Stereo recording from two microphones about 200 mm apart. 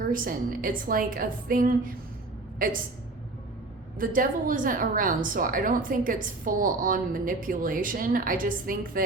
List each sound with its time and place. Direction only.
0.0 s a woman's voice: 45° right (ahead or behind)
3.9 s a woman's voice: 45° right (ahead or behind)